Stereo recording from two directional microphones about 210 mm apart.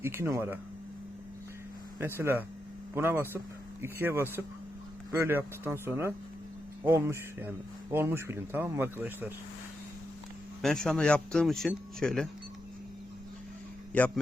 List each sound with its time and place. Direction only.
0.0 s speech: 10° right (ahead or behind)
2.0 s speech: 10° right (ahead or behind)
10.6 s speech: centre (ahead or behind)
13.9 s a man's voice: 5° left (ahead or behind)